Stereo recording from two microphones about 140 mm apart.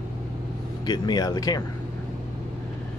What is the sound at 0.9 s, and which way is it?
Speech, 30° left (ahead or behind).